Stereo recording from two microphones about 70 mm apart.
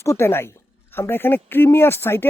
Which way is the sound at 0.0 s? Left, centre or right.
Left.